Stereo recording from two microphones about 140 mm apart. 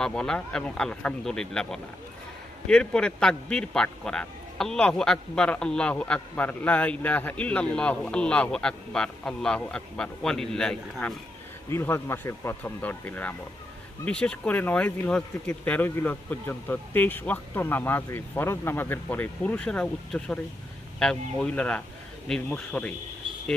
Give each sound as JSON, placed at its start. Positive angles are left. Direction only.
{"t": 0.0, "sound": "a man's voice", "side_deg": 5}
{"t": 11.7, "sound": "a man's voice", "side_deg": 15}